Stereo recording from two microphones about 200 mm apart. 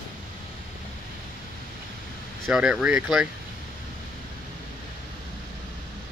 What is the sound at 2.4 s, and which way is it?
Speech, centre (ahead or behind).